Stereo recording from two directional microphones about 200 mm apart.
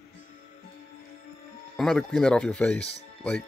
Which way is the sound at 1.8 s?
Centre (ahead or behind).